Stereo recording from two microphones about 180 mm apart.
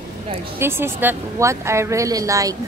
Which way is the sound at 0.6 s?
15° right (ahead or behind).